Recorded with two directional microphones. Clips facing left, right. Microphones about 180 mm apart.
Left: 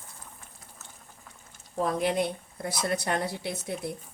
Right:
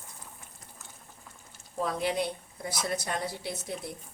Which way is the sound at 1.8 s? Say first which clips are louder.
Left 3 dB; 55° left (ahead or behind).